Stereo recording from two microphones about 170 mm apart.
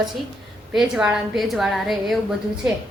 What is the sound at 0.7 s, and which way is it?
A woman's voice, 5° right (ahead or behind).